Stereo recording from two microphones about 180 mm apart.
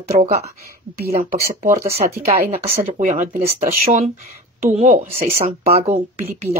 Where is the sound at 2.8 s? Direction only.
45° right (ahead or behind).